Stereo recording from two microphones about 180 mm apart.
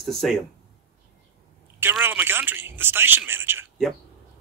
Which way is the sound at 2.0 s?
10° right (ahead or behind).